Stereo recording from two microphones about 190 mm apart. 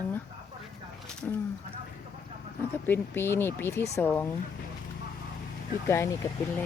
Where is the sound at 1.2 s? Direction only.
10° left (ahead or behind).